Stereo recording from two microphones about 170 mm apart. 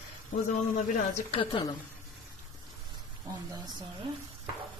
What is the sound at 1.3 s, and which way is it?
Speech, 30° left (ahead or behind).